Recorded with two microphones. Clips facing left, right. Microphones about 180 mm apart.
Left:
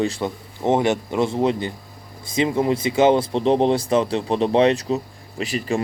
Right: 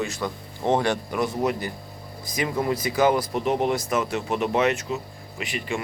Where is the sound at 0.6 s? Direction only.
20° left (ahead or behind); by 5.8 s 35° left (ahead or behind).